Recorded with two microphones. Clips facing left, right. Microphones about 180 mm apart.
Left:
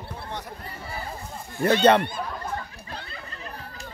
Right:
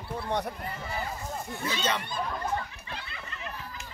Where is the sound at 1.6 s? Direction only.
60° left (ahead or behind).